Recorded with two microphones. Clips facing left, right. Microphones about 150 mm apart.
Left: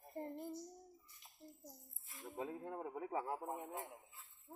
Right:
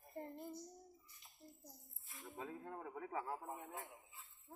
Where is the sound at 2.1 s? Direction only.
20° left (ahead or behind).